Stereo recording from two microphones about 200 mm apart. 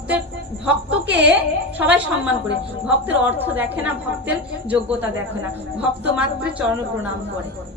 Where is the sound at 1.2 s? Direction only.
10° right (ahead or behind).